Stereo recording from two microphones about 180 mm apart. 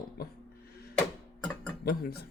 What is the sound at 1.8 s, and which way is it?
Speech, 60° left (ahead or behind).